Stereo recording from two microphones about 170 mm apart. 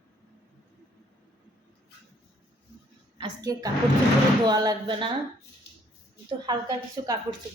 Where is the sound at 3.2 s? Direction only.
20° right (ahead or behind).